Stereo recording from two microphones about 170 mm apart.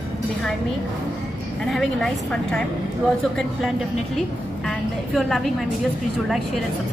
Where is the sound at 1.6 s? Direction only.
Centre (ahead or behind).